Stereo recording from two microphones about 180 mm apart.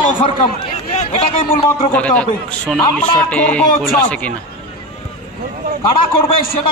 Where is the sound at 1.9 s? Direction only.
10° left (ahead or behind).